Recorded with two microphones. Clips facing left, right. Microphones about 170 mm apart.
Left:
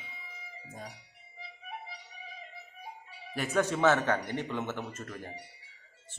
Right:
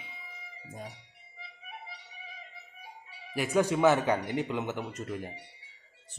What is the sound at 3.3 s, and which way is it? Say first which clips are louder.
Speech: right 3 dB; 10° right (ahead or behind).